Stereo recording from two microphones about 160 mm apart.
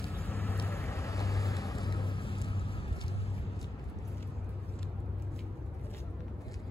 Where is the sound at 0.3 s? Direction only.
15° left (ahead or behind); by 2.9 s 35° left (ahead or behind).